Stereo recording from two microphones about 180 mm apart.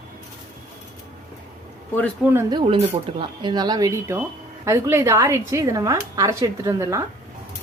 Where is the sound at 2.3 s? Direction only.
25° right (ahead or behind).